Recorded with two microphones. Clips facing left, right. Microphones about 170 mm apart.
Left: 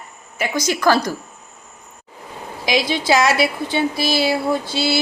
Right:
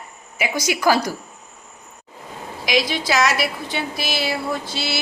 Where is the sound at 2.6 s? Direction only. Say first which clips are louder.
Left 2 dB; 30° left (ahead or behind).